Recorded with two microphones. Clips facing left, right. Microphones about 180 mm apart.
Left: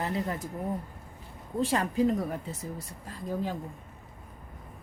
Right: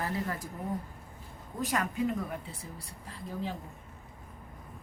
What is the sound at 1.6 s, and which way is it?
A woman's voice, 30° left (ahead or behind).